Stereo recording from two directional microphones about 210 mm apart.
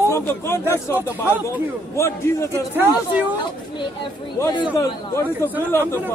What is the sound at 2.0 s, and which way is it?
Speech, 15° left (ahead or behind).